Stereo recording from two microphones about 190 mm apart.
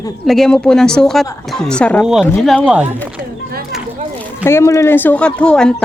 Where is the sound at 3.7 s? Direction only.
Centre (ahead or behind).